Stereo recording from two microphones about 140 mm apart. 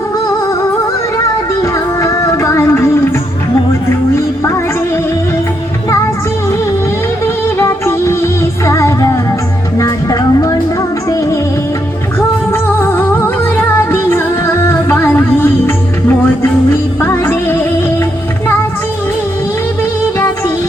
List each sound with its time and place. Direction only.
1.6 s music: 20° left (ahead or behind)
7.6 s music: 20° left (ahead or behind)
12.5 s music: 15° left (ahead or behind)
17.0 s music: 15° left (ahead or behind)